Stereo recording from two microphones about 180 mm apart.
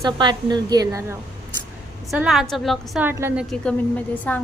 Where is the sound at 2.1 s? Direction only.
Centre (ahead or behind).